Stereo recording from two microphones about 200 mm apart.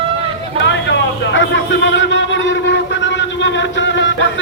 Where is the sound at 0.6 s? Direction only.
65° left (ahead or behind).